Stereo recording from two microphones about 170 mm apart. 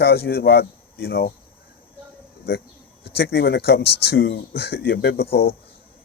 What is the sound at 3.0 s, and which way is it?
Speech, 75° left (ahead or behind).